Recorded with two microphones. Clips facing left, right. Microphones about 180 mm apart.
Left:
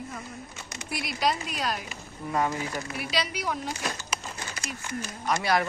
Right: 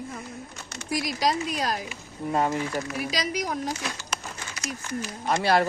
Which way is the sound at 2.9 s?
40° right (ahead or behind).